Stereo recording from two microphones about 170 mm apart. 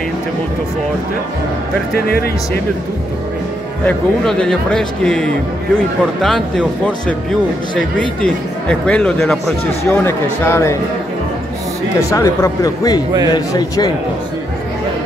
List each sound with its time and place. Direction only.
2.0 s speech: 65° left (ahead or behind)
3.8 s speech: 5° left (ahead or behind)
7.7 s speech: 5° left (ahead or behind)
9.8 s speech: 15° left (ahead or behind)
12.1 s a man's voice: 20° left (ahead or behind)